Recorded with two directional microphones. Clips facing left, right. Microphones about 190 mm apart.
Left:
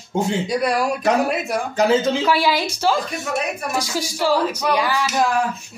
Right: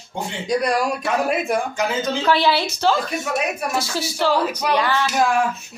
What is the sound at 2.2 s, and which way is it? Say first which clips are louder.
Speech: even; 10° left (ahead or behind).